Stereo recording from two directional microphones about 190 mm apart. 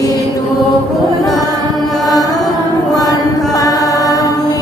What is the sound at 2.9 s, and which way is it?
Mantra, 20° left (ahead or behind).